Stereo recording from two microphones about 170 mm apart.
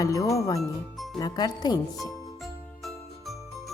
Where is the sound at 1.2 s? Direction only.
25° left (ahead or behind).